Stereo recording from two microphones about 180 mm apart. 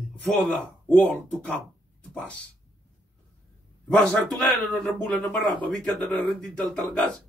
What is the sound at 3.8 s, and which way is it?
Speech, 5° left (ahead or behind).